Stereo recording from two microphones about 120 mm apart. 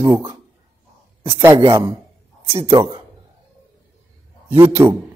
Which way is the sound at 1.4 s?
25° right (ahead or behind).